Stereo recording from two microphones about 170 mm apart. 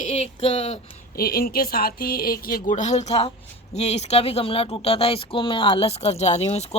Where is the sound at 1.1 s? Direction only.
60° left (ahead or behind).